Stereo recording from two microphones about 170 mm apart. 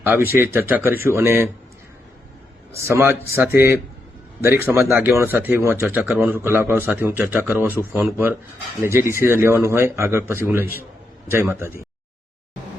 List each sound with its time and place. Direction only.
0.0 s speech: 10° right (ahead or behind)
2.8 s speech: 15° right (ahead or behind)